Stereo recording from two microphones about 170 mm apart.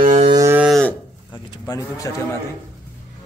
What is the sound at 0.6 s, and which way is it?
Cattle, 5° left (ahead or behind).